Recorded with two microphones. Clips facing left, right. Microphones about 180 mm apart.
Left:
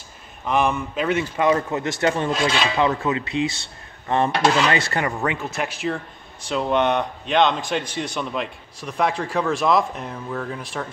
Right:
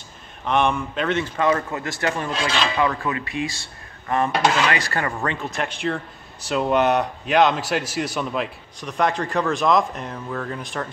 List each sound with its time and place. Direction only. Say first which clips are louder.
0.5 s a man's voice: even; 5° left (ahead or behind); by 2.3 s 25° left (ahead or behind)
2.4 s a man's voice: even; 10° left (ahead or behind)
2.8 s a man's voice: left 2 dB; 25° left (ahead or behind); by 10.9 s centre (ahead or behind)